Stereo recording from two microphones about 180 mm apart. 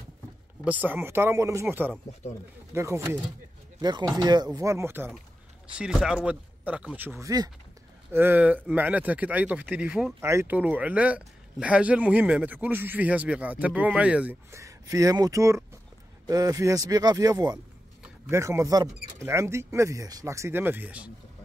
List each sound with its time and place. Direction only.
0.7 s speech: 10° right (ahead or behind)